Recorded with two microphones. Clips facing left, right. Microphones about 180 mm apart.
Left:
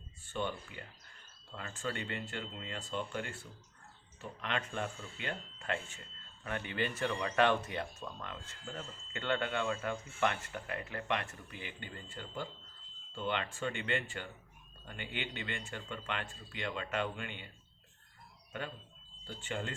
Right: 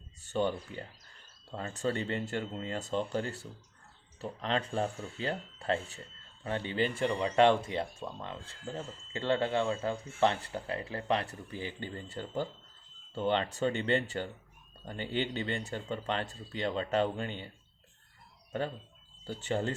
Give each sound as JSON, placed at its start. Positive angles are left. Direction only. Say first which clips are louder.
{"t": 0.2, "sound": "speech", "louder": "right 7 dB", "side_deg": -40}
{"t": 19.4, "sound": "speech", "louder": "right 7 dB", "side_deg": -35}